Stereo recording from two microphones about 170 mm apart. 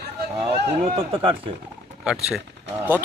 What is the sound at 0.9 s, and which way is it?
Speech, 30° right (ahead or behind).